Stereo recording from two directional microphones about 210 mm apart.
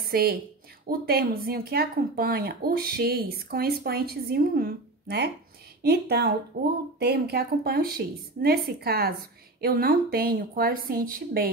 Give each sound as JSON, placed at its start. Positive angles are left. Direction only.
{"t": 0.0, "sound": "a woman's voice", "side_deg": -45}